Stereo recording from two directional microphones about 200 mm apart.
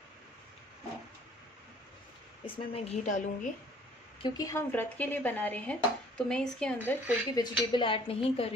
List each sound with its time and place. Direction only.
2.4 s a woman's voice: 30° left (ahead or behind)
4.2 s dishes: 20° left (ahead or behind); by 7.2 s 5° left (ahead or behind)
7.3 s a woman's voice: 20° left (ahead or behind)